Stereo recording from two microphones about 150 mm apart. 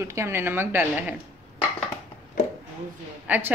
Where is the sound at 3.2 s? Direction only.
10° right (ahead or behind).